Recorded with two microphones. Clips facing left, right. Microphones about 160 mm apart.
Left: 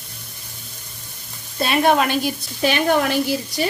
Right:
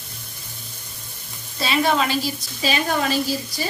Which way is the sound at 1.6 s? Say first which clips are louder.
Left 3 dB; 55° left (ahead or behind).